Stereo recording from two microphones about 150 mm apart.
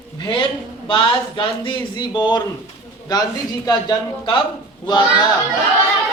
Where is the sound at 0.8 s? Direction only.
35° left (ahead or behind).